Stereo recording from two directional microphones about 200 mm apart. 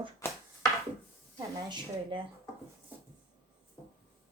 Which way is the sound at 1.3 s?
20° right (ahead or behind).